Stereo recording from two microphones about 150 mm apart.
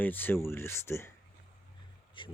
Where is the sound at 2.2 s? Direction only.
35° left (ahead or behind).